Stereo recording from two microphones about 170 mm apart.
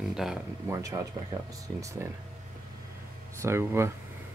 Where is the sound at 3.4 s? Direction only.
15° right (ahead or behind).